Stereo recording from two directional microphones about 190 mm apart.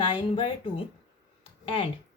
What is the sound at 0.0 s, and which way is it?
Speech, 25° left (ahead or behind).